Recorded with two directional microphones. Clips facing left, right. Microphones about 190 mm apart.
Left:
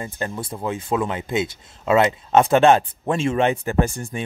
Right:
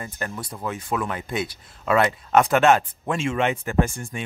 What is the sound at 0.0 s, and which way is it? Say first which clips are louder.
Speech: left 4 dB; 25° left (ahead or behind).